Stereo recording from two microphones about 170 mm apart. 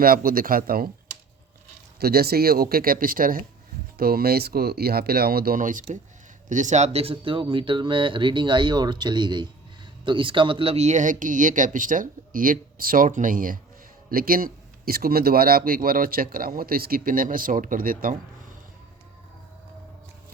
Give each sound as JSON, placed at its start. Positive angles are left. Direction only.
{"t": 0.0, "sound": "a man's voice", "side_deg": -60}
{"t": 2.0, "sound": "a man's voice", "side_deg": -65}